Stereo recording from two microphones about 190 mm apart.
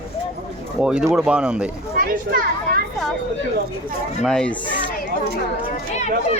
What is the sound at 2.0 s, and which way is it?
Speech, 50° right (ahead or behind).